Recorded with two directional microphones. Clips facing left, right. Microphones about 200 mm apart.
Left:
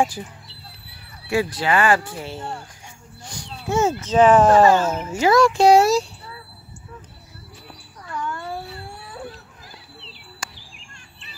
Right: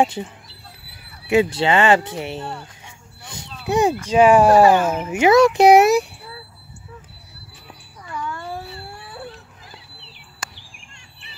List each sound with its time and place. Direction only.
0.0 s speech: 25° right (ahead or behind)
3.3 s a sound: 20° right (ahead or behind)
4.1 s speech: 10° right (ahead or behind)
8.1 s cat: centre (ahead or behind)